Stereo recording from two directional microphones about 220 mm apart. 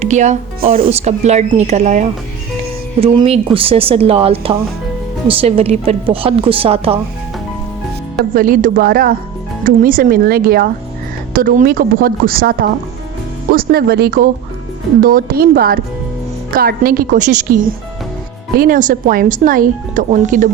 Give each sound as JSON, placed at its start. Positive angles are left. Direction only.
{"t": 0.0, "sound": "speech", "side_deg": -30}
{"t": 0.9, "sound": "a woman's voice", "side_deg": -30}
{"t": 8.3, "sound": "speech", "side_deg": -40}